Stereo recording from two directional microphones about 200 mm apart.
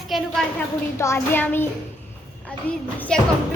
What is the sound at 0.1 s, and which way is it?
Speech, centre (ahead or behind).